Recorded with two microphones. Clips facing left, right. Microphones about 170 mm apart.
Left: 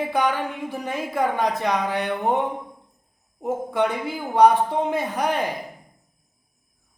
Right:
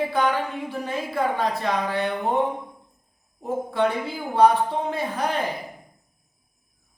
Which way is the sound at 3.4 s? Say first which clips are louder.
Even; 15° left (ahead or behind).